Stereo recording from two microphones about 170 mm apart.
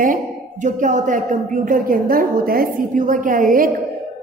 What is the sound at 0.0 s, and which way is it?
A woman's voice, 50° right (ahead or behind).